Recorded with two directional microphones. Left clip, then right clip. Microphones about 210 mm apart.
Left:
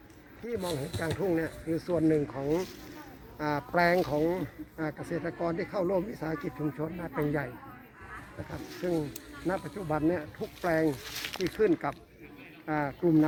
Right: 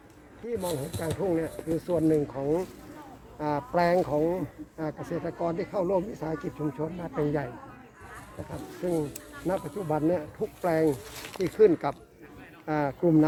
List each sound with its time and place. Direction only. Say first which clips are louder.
0.4 s speech: right 2 dB; centre (ahead or behind)
8.8 s speech: right 2 dB; 10° right (ahead or behind)
9.5 s speech: right 3 dB; 35° right (ahead or behind)
11.0 s speech: right 1 dB; 10° right (ahead or behind)
11.5 s speech: right 7 dB; 45° right (ahead or behind)